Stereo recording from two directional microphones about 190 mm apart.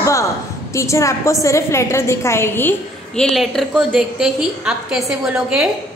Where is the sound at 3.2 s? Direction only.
Centre (ahead or behind).